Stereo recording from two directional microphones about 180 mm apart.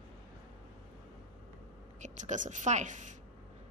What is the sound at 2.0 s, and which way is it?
A woman's voice, 45° right (ahead or behind).